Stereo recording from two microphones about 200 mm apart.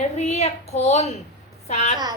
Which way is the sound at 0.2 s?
35° left (ahead or behind).